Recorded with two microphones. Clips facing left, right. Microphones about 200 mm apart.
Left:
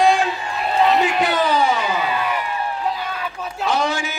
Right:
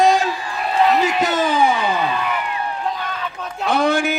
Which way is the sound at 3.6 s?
55° right (ahead or behind).